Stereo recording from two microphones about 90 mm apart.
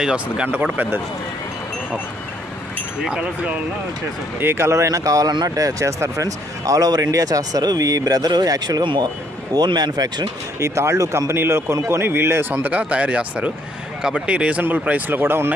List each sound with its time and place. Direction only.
0.0 s a man's voice: 10° right (ahead or behind)
3.0 s speech: 10° right (ahead or behind)
4.4 s speech: 25° right (ahead or behind); by 8.8 s 45° right (ahead or behind)
8.8 s speech: 65° right (ahead or behind)
9.5 s speech: 50° right (ahead or behind)
10.6 s a man's voice: 30° right (ahead or behind)